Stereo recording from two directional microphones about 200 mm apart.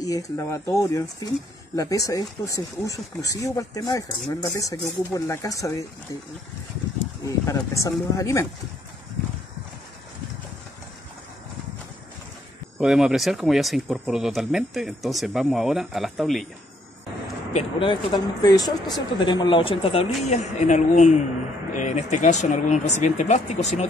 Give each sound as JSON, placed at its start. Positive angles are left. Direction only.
{"t": 0.0, "sound": "speech", "side_deg": 15}
{"t": 7.2, "sound": "speech", "side_deg": 15}
{"t": 12.7, "sound": "speech", "side_deg": 0}
{"t": 17.5, "sound": "speech", "side_deg": 30}